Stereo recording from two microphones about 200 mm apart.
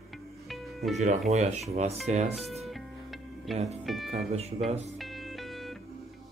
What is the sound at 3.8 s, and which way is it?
Speech, centre (ahead or behind).